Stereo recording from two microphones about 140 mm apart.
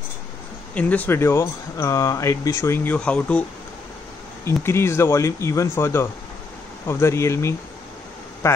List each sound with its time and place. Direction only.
0.7 s speech: 10° left (ahead or behind)
4.5 s speech: 20° left (ahead or behind)